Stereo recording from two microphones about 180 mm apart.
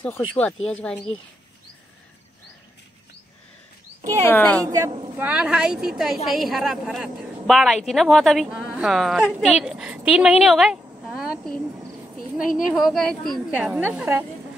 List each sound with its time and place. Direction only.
0.0 s a woman's voice: 10° left (ahead or behind)
4.2 s speech: 10° left (ahead or behind)
4.6 s a woman's voice: 20° right (ahead or behind); by 11.6 s centre (ahead or behind)
12.6 s a woman's voice: centre (ahead or behind)